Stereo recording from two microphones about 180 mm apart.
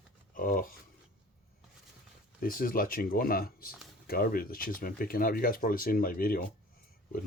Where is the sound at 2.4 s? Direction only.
55° left (ahead or behind).